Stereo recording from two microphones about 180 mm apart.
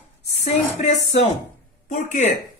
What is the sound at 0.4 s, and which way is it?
Speech, 40° left (ahead or behind).